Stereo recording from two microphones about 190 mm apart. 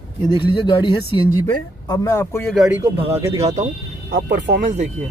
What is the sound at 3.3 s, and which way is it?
Speech, 30° right (ahead or behind).